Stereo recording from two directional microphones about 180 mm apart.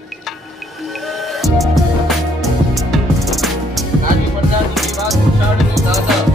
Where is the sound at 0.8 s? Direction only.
Centre (ahead or behind).